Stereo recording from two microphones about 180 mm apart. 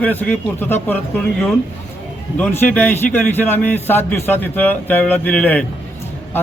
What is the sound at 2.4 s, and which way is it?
A man's voice, 10° left (ahead or behind).